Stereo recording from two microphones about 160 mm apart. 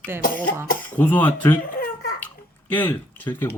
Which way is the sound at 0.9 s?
10° left (ahead or behind).